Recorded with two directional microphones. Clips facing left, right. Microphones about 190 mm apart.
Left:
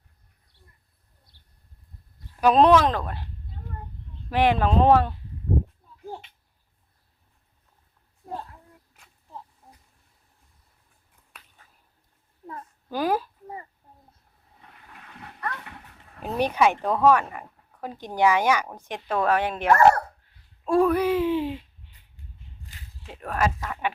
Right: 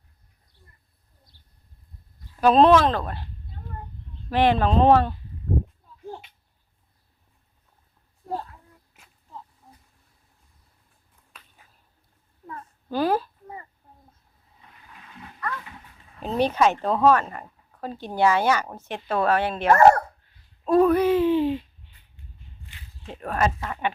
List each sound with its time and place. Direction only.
2.4 s speech: 15° left (ahead or behind)
4.3 s speech: 10° left (ahead or behind)
12.9 s a sound: 10° left (ahead or behind)
14.7 s vehicle: 60° left (ahead or behind)
16.2 s speech: 10° left (ahead or behind)
19.6 s speech: 30° right (ahead or behind)
20.7 s speech: 10° left (ahead or behind)
22.7 s a sound: 40° left (ahead or behind)
23.0 s speech: centre (ahead or behind)